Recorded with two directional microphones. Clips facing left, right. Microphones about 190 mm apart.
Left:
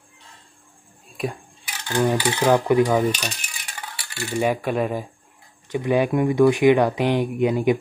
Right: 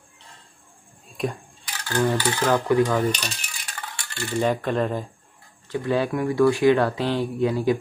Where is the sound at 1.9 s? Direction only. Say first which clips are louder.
Left 2 dB; 15° left (ahead or behind).